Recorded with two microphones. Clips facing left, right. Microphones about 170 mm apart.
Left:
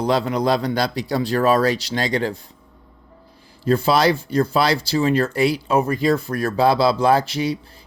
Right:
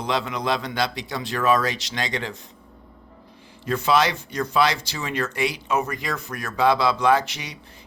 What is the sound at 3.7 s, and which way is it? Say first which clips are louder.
Speech: left 4 dB; 35° left (ahead or behind).